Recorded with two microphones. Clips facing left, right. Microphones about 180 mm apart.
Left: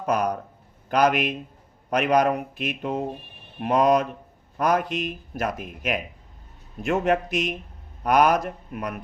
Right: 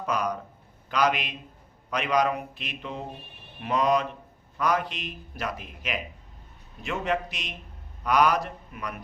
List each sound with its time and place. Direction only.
0.0 s a man's voice: 50° left (ahead or behind)